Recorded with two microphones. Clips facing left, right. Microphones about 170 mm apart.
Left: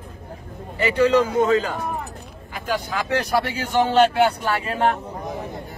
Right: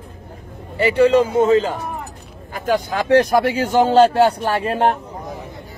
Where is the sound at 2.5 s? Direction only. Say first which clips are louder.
Right 6 dB; 45° right (ahead or behind).